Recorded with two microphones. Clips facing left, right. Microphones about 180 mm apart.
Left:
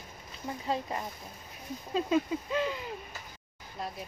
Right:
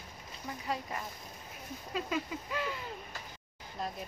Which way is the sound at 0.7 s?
25° left (ahead or behind).